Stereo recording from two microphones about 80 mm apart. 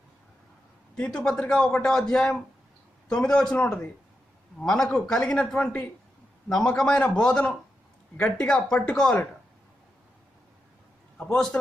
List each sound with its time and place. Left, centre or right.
0.9 s a man's voice: centre
11.2 s a man's voice: centre